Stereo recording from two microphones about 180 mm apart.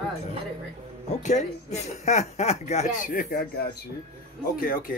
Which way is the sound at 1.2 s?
40° left (ahead or behind).